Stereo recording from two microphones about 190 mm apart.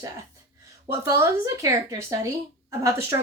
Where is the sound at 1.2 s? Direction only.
15° right (ahead or behind).